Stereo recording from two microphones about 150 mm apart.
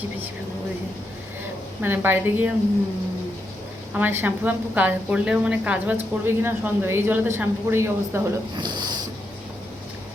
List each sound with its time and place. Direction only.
1.8 s a woman's voice: 15° right (ahead or behind)
3.9 s a woman's voice: 15° right (ahead or behind)
8.5 s a sound: 30° right (ahead or behind)